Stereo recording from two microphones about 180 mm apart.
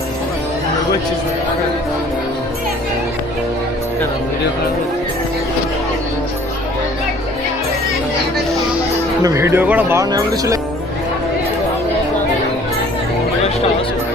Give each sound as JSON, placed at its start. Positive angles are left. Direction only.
{"t": 9.2, "sound": "speech", "side_deg": -15}